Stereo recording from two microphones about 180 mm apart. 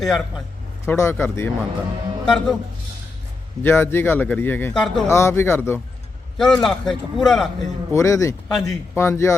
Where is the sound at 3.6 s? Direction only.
15° left (ahead or behind).